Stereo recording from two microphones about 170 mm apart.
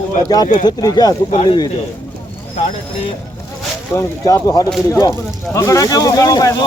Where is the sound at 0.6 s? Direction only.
25° left (ahead or behind).